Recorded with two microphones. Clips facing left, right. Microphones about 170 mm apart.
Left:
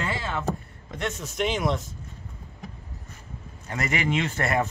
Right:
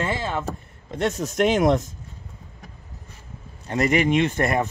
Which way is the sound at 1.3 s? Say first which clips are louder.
Right 7 dB; 50° right (ahead or behind).